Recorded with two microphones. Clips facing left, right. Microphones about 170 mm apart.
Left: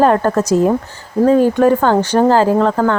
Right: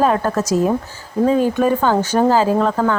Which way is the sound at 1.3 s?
15° right (ahead or behind).